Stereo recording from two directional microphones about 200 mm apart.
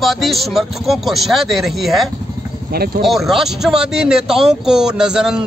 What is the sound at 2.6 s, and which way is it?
Speech, 50° right (ahead or behind).